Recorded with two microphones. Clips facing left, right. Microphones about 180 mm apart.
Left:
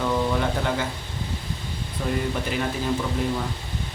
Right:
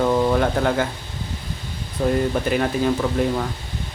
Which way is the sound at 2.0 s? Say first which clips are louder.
Right 7 dB; 45° right (ahead or behind).